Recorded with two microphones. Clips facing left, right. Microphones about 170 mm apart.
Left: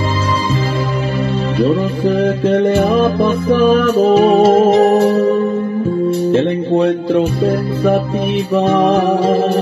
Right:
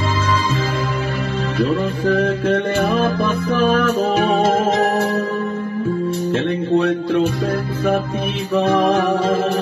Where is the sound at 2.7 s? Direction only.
15° left (ahead or behind).